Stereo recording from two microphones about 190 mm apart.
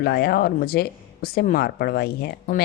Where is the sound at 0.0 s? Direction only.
55° left (ahead or behind).